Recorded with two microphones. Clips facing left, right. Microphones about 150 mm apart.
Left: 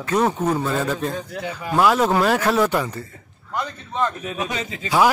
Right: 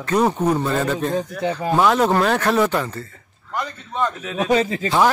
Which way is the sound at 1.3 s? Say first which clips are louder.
Right 6 dB; 25° right (ahead or behind).